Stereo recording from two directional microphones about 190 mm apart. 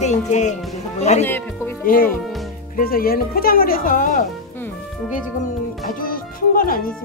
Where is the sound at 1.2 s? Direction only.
10° left (ahead or behind).